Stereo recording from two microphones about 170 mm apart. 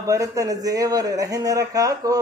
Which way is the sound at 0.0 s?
20° right (ahead or behind).